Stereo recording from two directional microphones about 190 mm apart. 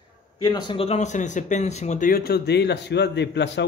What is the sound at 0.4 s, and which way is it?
Speech, 20° left (ahead or behind).